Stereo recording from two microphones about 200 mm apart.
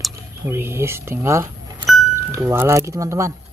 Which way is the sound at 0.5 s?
10° right (ahead or behind).